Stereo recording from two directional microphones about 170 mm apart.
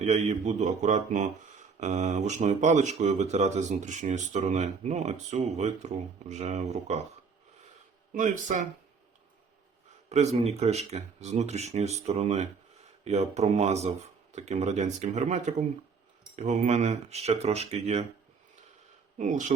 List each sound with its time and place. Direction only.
0.0 s speech: 40° right (ahead or behind)
8.1 s speech: 45° right (ahead or behind)
10.1 s speech: 40° right (ahead or behind)
19.2 s speech: 45° right (ahead or behind)